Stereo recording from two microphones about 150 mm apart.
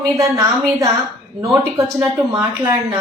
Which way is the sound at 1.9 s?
25° right (ahead or behind).